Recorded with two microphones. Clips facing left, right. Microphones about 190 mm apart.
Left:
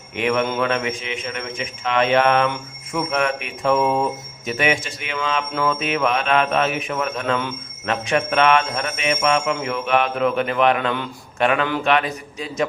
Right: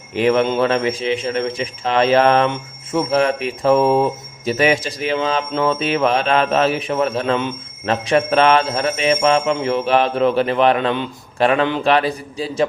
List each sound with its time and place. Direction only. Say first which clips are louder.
0.1 s a man's voice: right 5 dB; 35° right (ahead or behind)